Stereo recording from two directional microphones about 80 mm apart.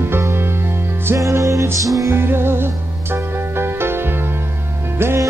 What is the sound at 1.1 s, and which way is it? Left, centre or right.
Music, right.